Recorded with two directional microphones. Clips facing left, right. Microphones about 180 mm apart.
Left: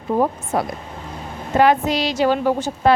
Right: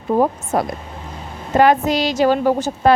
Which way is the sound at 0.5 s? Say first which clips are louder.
Right 2 dB; 45° right (ahead or behind).